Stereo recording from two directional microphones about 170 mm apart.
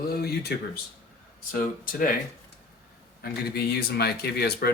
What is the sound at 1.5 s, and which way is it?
Speech, 55° left (ahead or behind).